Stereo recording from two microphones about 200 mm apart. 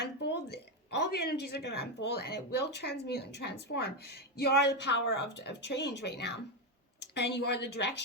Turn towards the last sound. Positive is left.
turn(degrees=55)  # may be behind; listen again after turning